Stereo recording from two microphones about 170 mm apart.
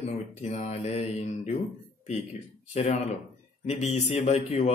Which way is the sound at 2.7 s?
40° left (ahead or behind).